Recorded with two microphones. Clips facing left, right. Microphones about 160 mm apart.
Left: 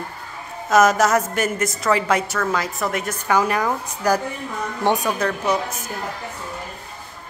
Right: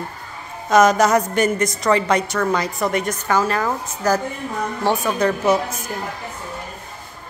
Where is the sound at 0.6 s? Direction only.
5° left (ahead or behind).